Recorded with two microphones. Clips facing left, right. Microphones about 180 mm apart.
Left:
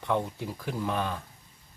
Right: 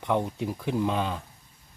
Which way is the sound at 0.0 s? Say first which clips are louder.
Right 3 dB; 15° right (ahead or behind).